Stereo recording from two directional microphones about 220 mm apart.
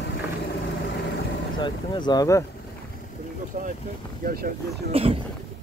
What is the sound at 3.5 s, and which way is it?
Speech, 40° right (ahead or behind).